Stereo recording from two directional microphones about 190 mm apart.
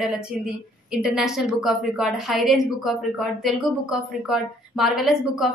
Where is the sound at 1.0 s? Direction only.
5° right (ahead or behind).